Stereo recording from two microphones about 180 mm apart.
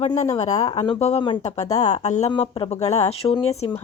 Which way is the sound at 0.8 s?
35° left (ahead or behind).